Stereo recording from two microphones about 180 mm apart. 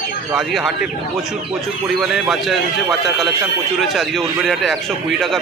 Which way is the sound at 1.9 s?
Centre (ahead or behind).